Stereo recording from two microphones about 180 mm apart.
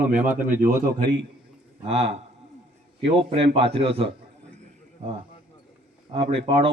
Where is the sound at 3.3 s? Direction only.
30° right (ahead or behind).